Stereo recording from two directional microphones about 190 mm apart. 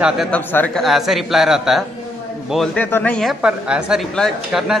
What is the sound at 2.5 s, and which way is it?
Speech, 10° left (ahead or behind).